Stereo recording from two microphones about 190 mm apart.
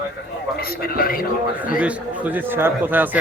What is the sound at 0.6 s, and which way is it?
Speech, 50° left (ahead or behind).